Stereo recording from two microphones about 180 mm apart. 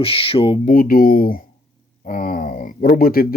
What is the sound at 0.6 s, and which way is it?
Speech, 50° left (ahead or behind).